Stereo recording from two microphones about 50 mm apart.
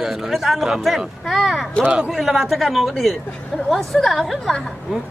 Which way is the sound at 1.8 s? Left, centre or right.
Centre.